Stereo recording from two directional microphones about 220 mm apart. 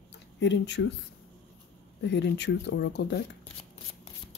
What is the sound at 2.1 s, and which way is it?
Speech, 50° left (ahead or behind).